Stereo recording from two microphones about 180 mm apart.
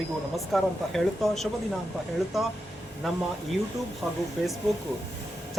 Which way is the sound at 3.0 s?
Centre (ahead or behind).